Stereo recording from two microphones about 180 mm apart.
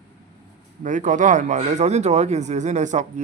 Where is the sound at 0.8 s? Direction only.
45° right (ahead or behind).